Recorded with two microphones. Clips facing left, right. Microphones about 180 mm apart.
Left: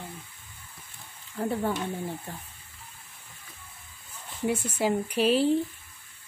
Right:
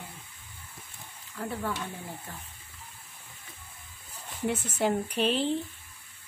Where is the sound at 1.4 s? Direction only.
30° left (ahead or behind).